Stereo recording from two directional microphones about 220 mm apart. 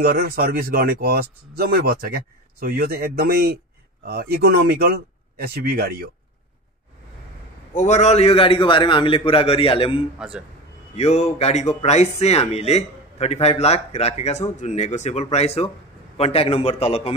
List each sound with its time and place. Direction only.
0.0 s speech: 45° right (ahead or behind)
7.7 s speech: 30° left (ahead or behind)
10.1 s speech: 5° right (ahead or behind)
11.0 s speech: 30° left (ahead or behind)